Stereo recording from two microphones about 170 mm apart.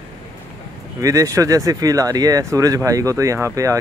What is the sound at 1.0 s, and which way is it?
Speech, 20° right (ahead or behind).